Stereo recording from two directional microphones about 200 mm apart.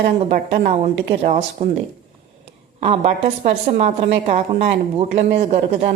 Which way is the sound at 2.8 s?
30° right (ahead or behind).